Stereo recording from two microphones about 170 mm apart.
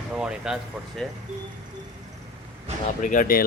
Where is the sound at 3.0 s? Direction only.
50° left (ahead or behind).